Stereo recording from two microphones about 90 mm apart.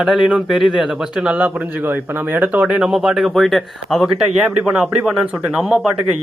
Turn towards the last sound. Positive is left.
turn(degrees=-5)  # may be behind; listen again after turning